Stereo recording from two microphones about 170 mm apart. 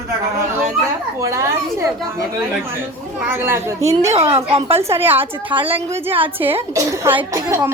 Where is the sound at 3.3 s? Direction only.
15° right (ahead or behind).